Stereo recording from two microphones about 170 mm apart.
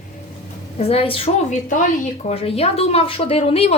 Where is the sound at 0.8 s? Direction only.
35° left (ahead or behind).